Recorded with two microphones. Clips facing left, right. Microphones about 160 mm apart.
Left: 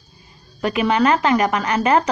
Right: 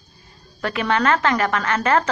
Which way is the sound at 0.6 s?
15° left (ahead or behind).